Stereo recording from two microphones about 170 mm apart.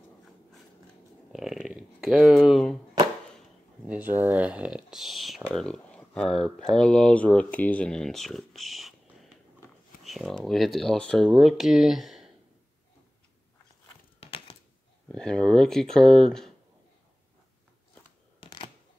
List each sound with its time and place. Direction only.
1.3 s speech: centre (ahead or behind)
3.8 s speech: 10° right (ahead or behind)
14.2 s typing: 30° left (ahead or behind)
15.0 s speech: 5° left (ahead or behind)
18.4 s a sound: 30° left (ahead or behind)